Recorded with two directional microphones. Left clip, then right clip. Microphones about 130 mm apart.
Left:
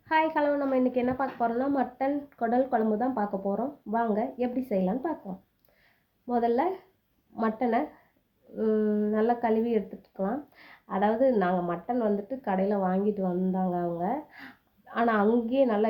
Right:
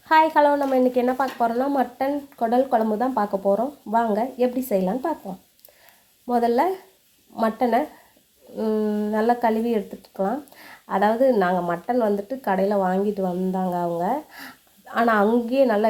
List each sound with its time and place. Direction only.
0.1 s speech: 25° right (ahead or behind)
6.2 s speech: 20° right (ahead or behind)